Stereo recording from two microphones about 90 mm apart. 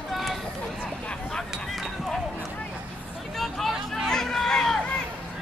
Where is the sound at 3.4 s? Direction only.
Centre (ahead or behind).